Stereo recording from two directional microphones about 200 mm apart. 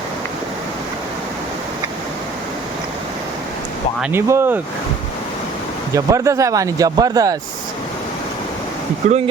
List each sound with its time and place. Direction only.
4.0 s speech: 10° right (ahead or behind)
5.9 s speech: 15° right (ahead or behind)
9.0 s speech: 35° right (ahead or behind)